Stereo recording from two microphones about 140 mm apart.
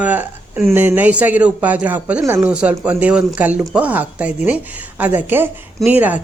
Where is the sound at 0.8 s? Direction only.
15° right (ahead or behind).